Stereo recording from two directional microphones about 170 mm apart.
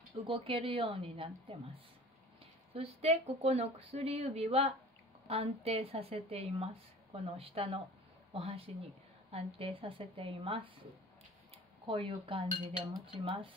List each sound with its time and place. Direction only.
0.3 s speech: 30° right (ahead or behind)
11.8 s speech: 30° right (ahead or behind)